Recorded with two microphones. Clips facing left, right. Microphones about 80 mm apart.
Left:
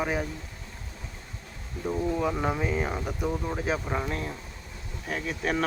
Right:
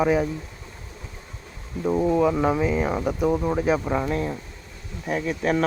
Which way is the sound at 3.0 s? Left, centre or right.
Right.